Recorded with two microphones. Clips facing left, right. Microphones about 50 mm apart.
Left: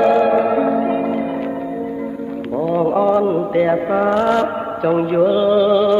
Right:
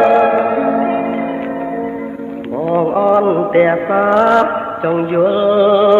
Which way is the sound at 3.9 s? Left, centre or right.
Right.